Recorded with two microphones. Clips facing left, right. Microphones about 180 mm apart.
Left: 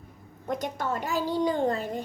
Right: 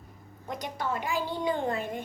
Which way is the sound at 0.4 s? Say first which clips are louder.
Left 3 dB; 50° left (ahead or behind).